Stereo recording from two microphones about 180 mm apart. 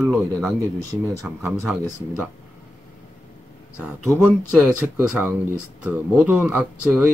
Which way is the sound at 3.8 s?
10° right (ahead or behind).